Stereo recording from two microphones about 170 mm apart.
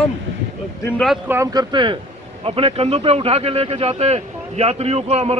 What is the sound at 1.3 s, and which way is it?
Speech, 15° right (ahead or behind).